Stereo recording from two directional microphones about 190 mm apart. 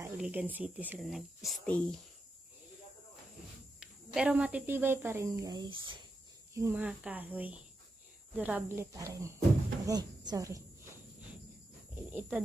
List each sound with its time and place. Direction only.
0.0 s speech: 5° right (ahead or behind)
3.8 s speech: 5° right (ahead or behind); by 5.9 s 25° right (ahead or behind)
6.5 s speech: 10° right (ahead or behind)
9.8 s cricket: 20° right (ahead or behind)
12.1 s speech: 10° right (ahead or behind)